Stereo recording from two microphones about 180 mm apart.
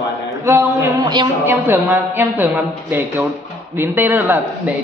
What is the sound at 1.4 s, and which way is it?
A woman's voice, 10° right (ahead or behind).